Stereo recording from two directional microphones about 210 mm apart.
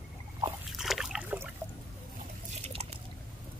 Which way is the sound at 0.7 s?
Centre (ahead or behind).